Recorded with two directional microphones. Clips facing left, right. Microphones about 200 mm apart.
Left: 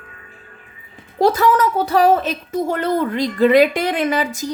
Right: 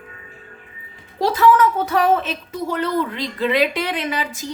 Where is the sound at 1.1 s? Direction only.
45° left (ahead or behind).